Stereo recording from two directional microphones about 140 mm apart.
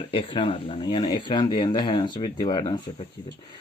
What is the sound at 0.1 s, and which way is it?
Speech, 40° left (ahead or behind).